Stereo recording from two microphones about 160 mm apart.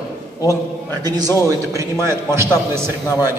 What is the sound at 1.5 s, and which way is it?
A man's voice, 20° right (ahead or behind).